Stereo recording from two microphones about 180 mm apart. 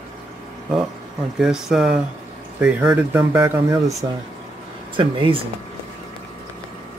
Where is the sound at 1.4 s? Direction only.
5° right (ahead or behind).